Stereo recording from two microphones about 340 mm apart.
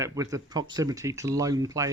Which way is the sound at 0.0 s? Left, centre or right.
Centre.